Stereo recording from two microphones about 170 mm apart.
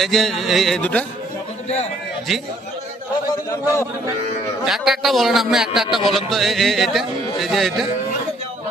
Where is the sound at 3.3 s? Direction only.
20° left (ahead or behind).